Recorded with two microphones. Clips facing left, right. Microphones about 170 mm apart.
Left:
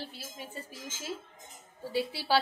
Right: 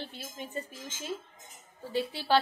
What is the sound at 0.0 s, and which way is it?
A woman's voice, 5° left (ahead or behind).